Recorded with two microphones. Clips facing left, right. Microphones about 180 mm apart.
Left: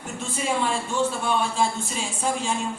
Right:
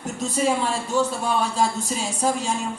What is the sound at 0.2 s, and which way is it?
A man's voice, 40° right (ahead or behind).